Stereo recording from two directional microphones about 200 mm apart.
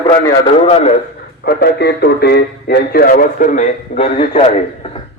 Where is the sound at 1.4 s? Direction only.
55° left (ahead or behind).